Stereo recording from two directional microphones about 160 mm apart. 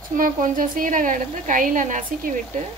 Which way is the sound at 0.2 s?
55° right (ahead or behind).